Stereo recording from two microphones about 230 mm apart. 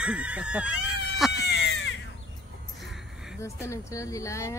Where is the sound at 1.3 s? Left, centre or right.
Left.